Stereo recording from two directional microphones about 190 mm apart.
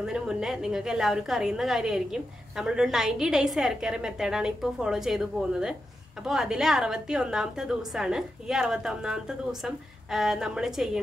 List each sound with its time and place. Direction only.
0.0 s a woman's voice: 5° right (ahead or behind)